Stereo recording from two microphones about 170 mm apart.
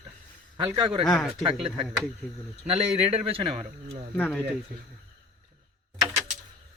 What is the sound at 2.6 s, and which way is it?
A man's voice, 35° right (ahead or behind).